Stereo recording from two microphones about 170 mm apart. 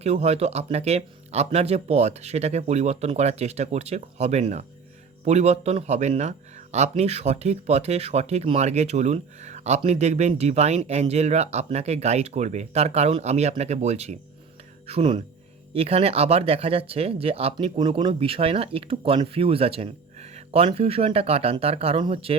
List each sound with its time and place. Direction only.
0.0 s speech: 40° right (ahead or behind)